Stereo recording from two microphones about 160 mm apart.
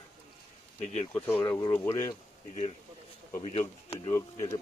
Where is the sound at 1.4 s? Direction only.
25° left (ahead or behind).